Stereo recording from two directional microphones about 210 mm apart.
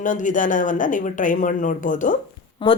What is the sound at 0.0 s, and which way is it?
Speech, 40° left (ahead or behind).